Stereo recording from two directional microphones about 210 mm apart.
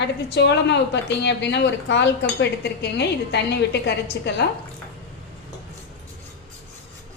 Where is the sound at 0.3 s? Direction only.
55° left (ahead or behind).